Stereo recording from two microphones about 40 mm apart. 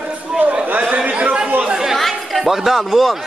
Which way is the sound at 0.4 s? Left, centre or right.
Right.